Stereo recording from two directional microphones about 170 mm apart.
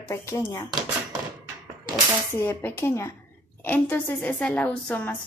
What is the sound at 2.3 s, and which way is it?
A child's voice, 15° left (ahead or behind).